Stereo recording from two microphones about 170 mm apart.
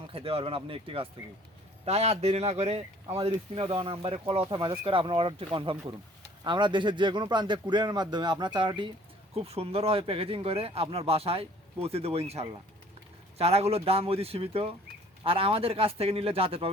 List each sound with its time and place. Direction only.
0.1 s a man's voice: 35° right (ahead or behind)